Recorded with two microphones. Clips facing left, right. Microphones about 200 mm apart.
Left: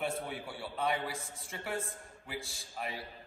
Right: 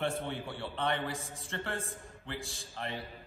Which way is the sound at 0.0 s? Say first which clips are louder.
Right 2 dB; centre (ahead or behind).